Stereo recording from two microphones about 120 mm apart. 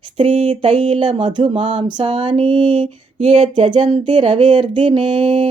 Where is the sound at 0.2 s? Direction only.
55° right (ahead or behind).